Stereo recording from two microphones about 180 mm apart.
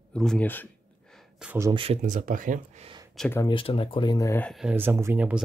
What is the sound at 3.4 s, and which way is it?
Speech, 30° left (ahead or behind).